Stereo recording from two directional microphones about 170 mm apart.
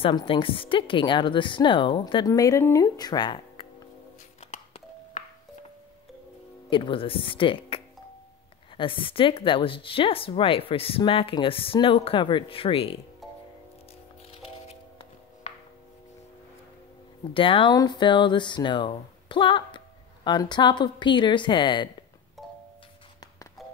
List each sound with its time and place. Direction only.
0.0 s a woman's voice: 30° left (ahead or behind)
4.4 s music: 40° left (ahead or behind)
6.7 s speech: 30° left (ahead or behind)
14.3 s music: 35° left (ahead or behind)
17.3 s a woman's voice: 30° left (ahead or behind)